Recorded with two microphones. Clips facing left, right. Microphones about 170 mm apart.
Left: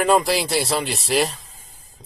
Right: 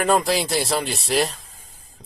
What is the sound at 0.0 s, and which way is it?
Speech, centre (ahead or behind).